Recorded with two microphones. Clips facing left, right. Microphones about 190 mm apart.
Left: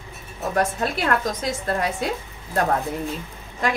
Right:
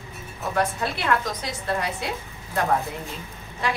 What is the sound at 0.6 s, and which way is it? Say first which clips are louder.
Speech: left 3 dB; 45° left (ahead or behind).